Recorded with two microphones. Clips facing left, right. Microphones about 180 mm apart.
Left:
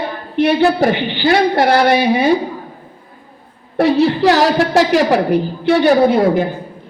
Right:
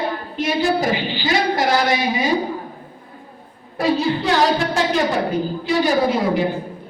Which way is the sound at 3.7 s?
70° left (ahead or behind).